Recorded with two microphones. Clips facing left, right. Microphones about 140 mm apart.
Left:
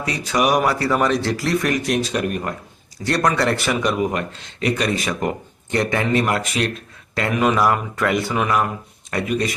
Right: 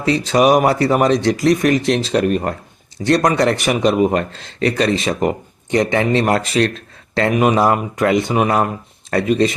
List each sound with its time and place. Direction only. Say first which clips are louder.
0.0 s speech: right 6 dB; 30° right (ahead or behind)
7.1 s speech: right 4 dB; 25° right (ahead or behind)
8.4 s speech: right 3 dB; 35° right (ahead or behind)